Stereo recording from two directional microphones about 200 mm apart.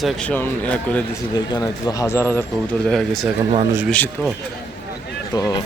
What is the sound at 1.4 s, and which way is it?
Speech, 20° left (ahead or behind).